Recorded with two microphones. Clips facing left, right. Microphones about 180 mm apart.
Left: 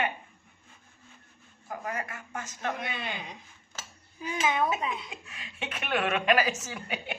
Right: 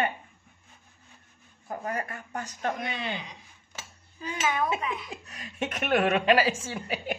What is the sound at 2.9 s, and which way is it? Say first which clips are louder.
Speech: right 2 dB; 55° left (ahead or behind).